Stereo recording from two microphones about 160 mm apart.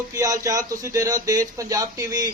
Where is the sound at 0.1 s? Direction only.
20° right (ahead or behind).